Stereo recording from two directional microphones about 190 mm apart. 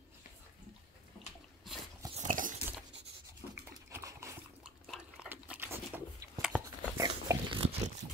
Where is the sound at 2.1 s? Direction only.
40° right (ahead or behind).